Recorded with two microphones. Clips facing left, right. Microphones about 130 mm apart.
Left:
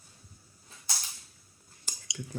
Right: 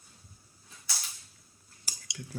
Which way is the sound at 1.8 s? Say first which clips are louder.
Left 3 dB; centre (ahead or behind).